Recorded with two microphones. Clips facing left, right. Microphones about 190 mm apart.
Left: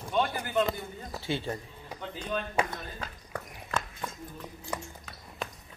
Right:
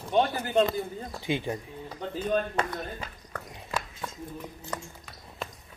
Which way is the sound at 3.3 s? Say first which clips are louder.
Left 1 dB; 10° left (ahead or behind).